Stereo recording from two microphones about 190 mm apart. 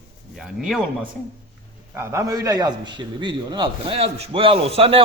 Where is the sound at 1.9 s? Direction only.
15° right (ahead or behind).